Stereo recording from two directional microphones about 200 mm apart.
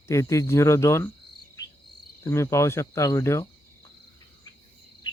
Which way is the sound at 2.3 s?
15° left (ahead or behind).